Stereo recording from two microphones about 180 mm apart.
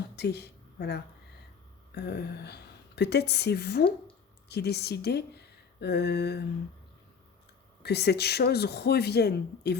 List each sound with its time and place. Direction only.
0.2 s speech: 65° left (ahead or behind)
7.8 s speech: 65° left (ahead or behind)